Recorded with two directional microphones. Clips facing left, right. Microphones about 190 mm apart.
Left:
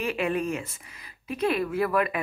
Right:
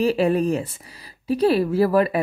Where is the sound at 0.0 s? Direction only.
35° right (ahead or behind).